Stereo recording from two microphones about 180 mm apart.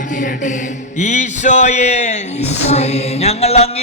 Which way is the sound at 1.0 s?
40° left (ahead or behind).